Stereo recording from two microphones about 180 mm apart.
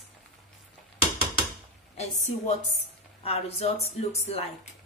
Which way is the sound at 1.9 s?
40° left (ahead or behind).